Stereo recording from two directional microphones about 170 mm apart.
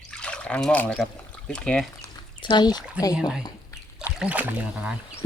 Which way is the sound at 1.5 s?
5° left (ahead or behind).